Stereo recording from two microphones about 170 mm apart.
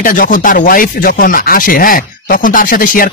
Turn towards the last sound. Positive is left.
turn(degrees=55)  # may be behind; listen again after turning